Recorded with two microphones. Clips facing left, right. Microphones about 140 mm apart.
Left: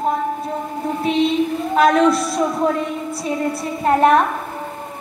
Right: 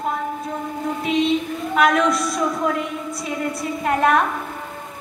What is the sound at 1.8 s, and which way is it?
Speech, 30° left (ahead or behind).